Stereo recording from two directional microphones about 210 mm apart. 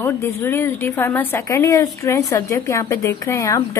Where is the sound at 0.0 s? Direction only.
10° left (ahead or behind).